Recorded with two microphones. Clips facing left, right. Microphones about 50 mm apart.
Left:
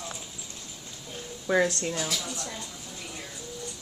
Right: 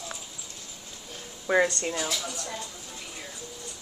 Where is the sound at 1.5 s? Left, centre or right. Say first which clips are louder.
Right 1 dB; centre.